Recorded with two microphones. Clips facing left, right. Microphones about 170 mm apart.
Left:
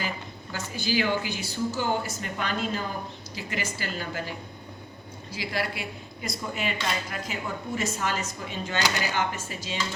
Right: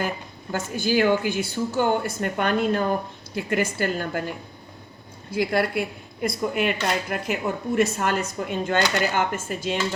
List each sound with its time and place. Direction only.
0.5 s a woman's voice: 50° right (ahead or behind)
5.3 s speech: 55° right (ahead or behind)